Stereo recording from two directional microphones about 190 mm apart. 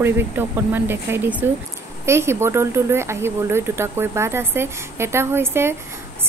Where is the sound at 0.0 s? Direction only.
10° right (ahead or behind).